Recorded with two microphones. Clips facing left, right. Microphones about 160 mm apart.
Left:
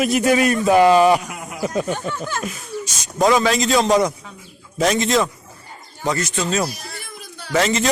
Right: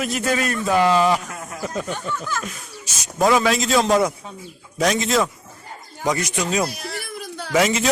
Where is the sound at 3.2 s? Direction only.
Centre (ahead or behind).